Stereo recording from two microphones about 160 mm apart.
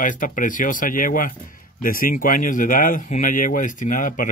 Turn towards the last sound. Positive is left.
turn(degrees=55)  # may be behind; listen again after turning